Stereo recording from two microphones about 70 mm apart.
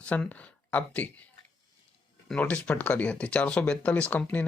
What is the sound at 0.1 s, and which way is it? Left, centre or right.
Speech, left.